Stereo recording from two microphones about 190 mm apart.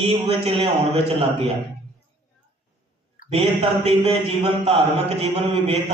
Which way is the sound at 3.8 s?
30° right (ahead or behind).